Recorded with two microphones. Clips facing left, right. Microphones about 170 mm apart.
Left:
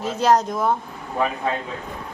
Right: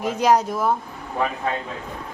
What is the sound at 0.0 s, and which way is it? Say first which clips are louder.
Speech: even; 15° right (ahead or behind).